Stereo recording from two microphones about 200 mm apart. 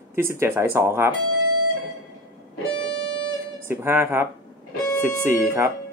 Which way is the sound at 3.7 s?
10° right (ahead or behind).